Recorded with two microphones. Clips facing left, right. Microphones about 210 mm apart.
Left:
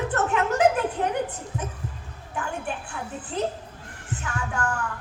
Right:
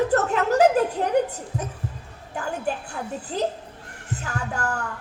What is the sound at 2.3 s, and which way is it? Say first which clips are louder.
Music: right 3 dB; 40° right (ahead or behind).